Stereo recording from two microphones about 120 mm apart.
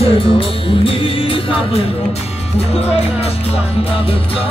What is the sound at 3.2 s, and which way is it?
Music, 55° left (ahead or behind).